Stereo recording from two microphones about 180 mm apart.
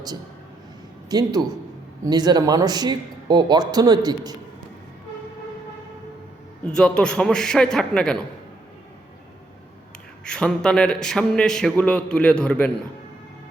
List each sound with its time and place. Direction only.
1.1 s speech: 20° right (ahead or behind)
6.7 s a man's voice: 5° left (ahead or behind)
10.2 s a man's voice: 5° left (ahead or behind)